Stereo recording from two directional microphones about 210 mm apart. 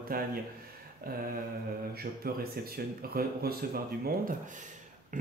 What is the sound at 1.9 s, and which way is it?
Speech, 45° right (ahead or behind).